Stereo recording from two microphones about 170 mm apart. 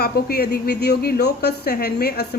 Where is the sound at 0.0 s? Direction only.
65° left (ahead or behind).